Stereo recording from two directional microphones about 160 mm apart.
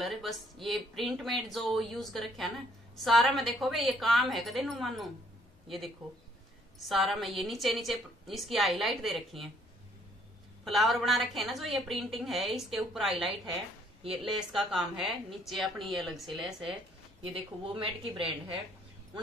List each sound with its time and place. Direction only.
0.0 s a woman's voice: centre (ahead or behind)
6.9 s a woman's voice: centre (ahead or behind)
10.6 s a woman's voice: centre (ahead or behind)
17.2 s speech: 30° right (ahead or behind)